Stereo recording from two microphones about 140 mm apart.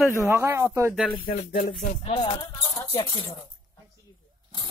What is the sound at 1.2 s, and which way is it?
Speech, 80° left.